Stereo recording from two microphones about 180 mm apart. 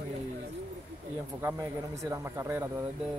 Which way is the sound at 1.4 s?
15° right (ahead or behind).